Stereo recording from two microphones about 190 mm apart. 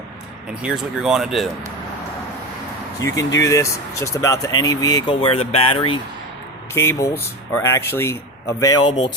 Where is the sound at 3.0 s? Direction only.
20° left (ahead or behind).